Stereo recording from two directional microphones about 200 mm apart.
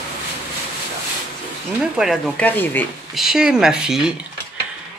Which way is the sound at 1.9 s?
Centre (ahead or behind).